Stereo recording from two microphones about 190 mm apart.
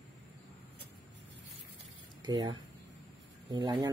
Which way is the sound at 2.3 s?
25° right (ahead or behind).